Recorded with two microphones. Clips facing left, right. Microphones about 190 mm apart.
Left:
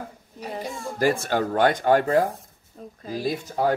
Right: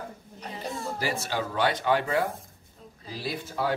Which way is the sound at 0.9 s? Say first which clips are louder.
Left 10 dB; 50° left (ahead or behind).